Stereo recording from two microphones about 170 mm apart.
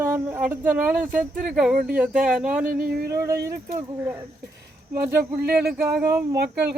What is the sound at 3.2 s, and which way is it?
Speech, 15° right (ahead or behind).